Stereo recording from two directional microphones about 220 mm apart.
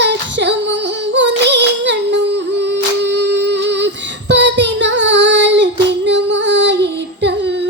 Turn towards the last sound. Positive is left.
turn(degrees=-50)  # may be behind; listen again after turning